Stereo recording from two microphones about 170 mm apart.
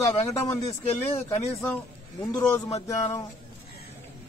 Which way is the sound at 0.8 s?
35° left (ahead or behind).